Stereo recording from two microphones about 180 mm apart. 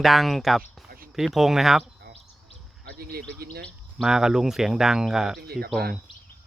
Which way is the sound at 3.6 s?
Centre (ahead or behind).